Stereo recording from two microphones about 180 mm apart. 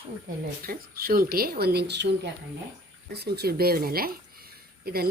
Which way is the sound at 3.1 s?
65° right (ahead or behind).